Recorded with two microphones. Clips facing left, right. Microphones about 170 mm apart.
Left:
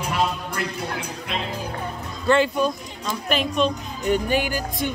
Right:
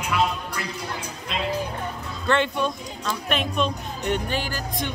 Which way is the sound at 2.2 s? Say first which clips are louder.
Left 4 dB; 5° left (ahead or behind).